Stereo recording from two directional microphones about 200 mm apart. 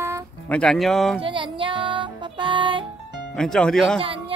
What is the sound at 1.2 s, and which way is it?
Music, 25° right (ahead or behind).